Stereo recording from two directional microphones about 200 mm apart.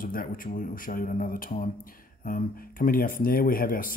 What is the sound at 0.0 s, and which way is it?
Speech, 45° left (ahead or behind).